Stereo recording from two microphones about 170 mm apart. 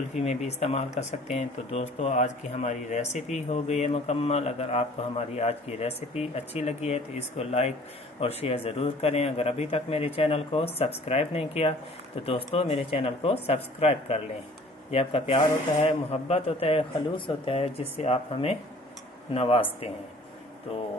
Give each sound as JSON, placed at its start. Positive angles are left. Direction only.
{"t": 0.2, "sound": "speech", "side_deg": 40}